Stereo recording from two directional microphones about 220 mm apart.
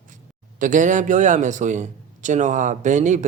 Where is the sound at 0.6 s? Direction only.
35° right (ahead or behind).